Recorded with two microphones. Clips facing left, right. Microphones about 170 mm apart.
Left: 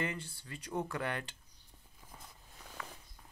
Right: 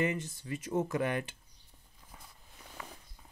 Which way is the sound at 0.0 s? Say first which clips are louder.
Right 6 dB; 20° right (ahead or behind).